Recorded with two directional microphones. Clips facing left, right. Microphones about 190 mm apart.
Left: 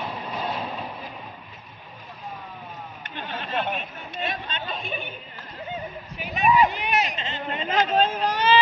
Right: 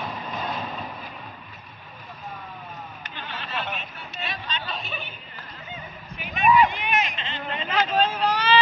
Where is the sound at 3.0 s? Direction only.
50° left (ahead or behind).